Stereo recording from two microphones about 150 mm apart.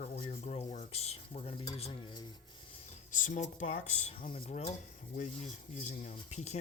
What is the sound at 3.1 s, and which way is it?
Speech, 60° left (ahead or behind).